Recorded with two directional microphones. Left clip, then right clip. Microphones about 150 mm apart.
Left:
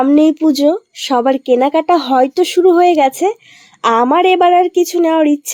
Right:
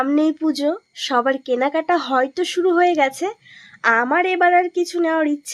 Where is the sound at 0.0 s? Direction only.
35° left (ahead or behind).